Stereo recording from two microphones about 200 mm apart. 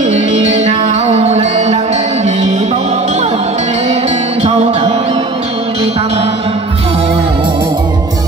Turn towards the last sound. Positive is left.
turn(degrees=-25)  # may be behind; listen again after turning